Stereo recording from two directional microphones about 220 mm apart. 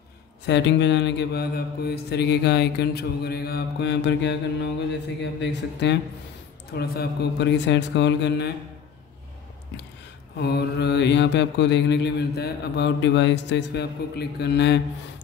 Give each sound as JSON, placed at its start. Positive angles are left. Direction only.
{"t": 0.5, "sound": "mantra", "side_deg": 55}
{"t": 10.4, "sound": "mantra", "side_deg": 50}